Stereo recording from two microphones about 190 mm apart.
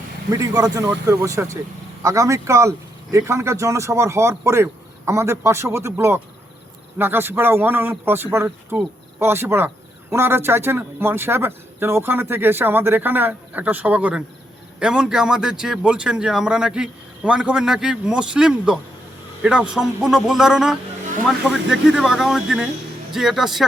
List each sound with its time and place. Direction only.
0.3 s a man's voice: 15° right (ahead or behind); by 23.6 s centre (ahead or behind)